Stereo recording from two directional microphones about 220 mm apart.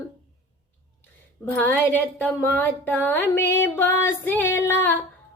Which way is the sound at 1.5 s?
10° left (ahead or behind).